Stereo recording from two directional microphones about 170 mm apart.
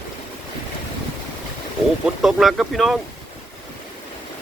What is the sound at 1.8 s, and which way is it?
Vehicle, centre (ahead or behind).